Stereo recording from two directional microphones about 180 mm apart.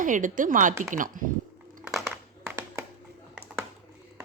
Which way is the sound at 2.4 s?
15° right (ahead or behind).